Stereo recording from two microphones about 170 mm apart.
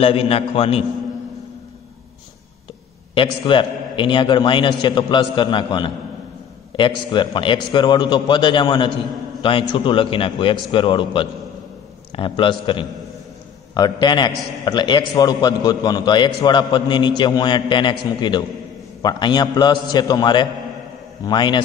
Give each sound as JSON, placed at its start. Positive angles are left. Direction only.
{"t": 0.0, "sound": "a man's voice", "side_deg": 35}
{"t": 3.2, "sound": "a man's voice", "side_deg": 30}
{"t": 7.1, "sound": "a man's voice", "side_deg": 30}